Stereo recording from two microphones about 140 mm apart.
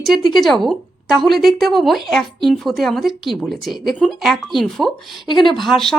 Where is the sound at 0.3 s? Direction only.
Centre (ahead or behind).